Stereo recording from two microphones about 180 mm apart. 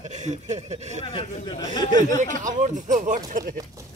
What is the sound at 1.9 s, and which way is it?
Speech, 45° right (ahead or behind).